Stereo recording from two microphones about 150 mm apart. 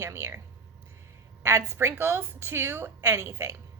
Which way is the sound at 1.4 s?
15° right (ahead or behind).